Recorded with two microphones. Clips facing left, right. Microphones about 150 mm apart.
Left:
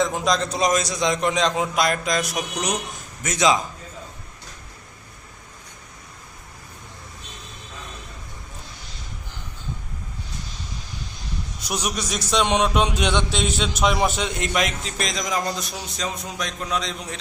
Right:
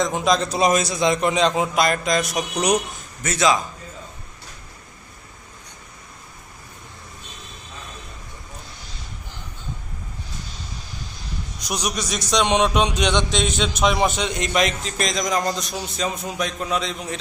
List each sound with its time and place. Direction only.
0.0 s a man's voice: centre (ahead or behind)
3.2 s a man's voice: 15° left (ahead or behind)
11.6 s a man's voice: 10° right (ahead or behind)
11.9 s a man's voice: 10° left (ahead or behind)